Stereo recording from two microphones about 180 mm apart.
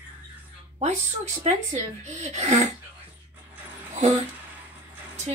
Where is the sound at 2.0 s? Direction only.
40° right (ahead or behind).